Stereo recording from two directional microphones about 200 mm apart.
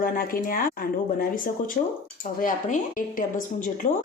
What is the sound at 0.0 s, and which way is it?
A woman's voice, 45° left (ahead or behind).